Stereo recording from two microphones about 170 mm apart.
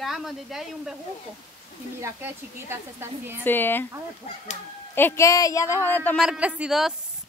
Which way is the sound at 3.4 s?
10° left (ahead or behind).